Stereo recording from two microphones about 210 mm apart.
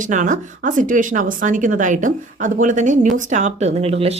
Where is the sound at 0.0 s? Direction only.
35° right (ahead or behind).